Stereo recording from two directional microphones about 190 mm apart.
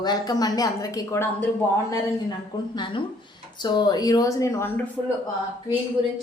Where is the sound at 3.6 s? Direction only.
20° left (ahead or behind).